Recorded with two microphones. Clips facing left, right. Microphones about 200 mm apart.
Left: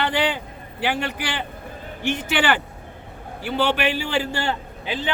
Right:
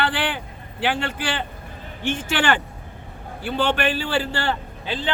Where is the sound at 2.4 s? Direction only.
15° left (ahead or behind).